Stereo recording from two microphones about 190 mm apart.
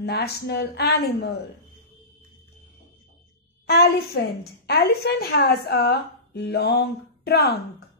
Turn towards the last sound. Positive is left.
turn(degrees=55)  # may be behind; listen again after turning